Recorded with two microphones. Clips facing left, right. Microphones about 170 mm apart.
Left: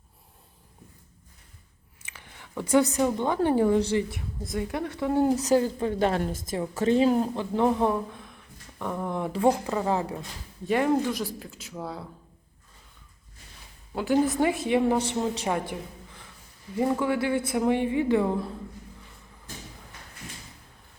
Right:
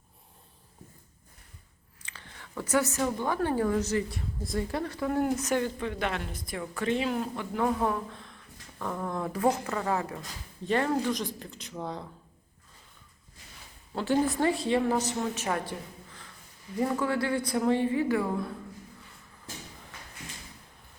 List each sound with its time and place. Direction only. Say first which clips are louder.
2.1 s a woman's voice: left 3 dB; 15° left (ahead or behind)
10.7 s speech: left 3 dB; 10° left (ahead or behind)
13.9 s a woman's voice: left 3 dB; 15° left (ahead or behind)
17.0 s speech: left 3 dB; 20° left (ahead or behind)